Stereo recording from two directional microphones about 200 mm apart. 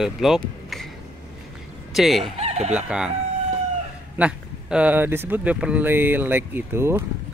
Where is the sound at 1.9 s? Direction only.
Centre (ahead or behind).